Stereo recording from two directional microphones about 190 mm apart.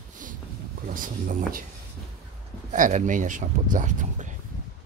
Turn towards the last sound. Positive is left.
turn(degrees=-40)  # may be behind; listen again after turning